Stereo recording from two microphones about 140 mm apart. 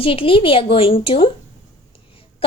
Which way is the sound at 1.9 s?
40° left (ahead or behind).